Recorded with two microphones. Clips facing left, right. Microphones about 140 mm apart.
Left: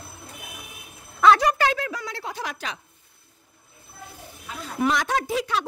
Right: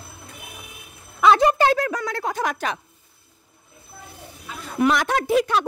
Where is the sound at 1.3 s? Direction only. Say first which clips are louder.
Right 4 dB; 25° right (ahead or behind).